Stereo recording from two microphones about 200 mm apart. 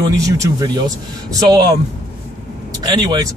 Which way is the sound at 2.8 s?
20° right (ahead or behind).